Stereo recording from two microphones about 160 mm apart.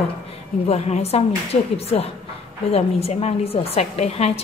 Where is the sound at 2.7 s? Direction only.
40° left (ahead or behind).